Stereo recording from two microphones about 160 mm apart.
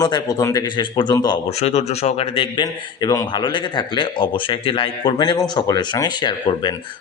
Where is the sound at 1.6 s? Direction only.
40° left (ahead or behind).